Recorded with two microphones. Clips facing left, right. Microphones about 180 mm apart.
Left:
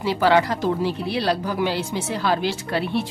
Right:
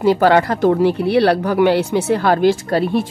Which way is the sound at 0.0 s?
50° right (ahead or behind).